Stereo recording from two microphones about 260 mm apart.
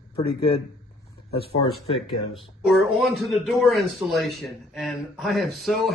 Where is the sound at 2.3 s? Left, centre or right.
Centre.